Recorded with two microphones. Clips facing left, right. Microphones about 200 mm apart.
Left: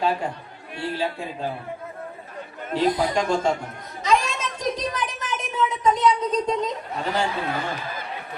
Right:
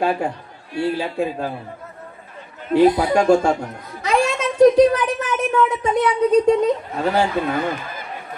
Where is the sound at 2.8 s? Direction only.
65° right (ahead or behind).